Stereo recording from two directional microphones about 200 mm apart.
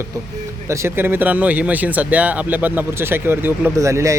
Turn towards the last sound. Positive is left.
turn(degrees=-15)  # may be behind; listen again after turning